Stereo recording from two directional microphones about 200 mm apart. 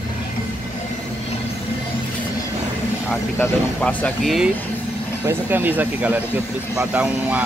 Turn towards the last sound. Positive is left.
turn(degrees=-5)  # may be behind; listen again after turning